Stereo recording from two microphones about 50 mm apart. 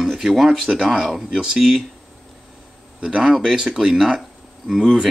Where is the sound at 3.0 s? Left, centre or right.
Centre.